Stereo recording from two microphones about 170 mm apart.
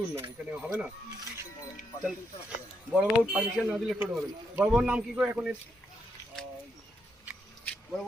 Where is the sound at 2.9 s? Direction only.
5° right (ahead or behind).